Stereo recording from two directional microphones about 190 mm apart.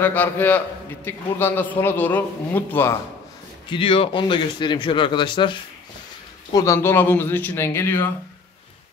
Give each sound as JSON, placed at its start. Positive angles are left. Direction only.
{"t": 0.0, "sound": "a man's voice", "side_deg": 10}
{"t": 3.7, "sound": "a man's voice", "side_deg": 30}